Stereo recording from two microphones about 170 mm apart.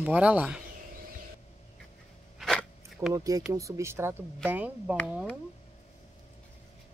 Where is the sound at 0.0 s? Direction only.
10° right (ahead or behind).